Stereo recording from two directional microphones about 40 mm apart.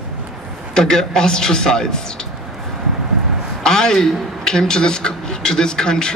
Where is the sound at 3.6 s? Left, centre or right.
Centre.